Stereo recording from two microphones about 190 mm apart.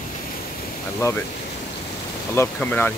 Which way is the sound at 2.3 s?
10° left (ahead or behind).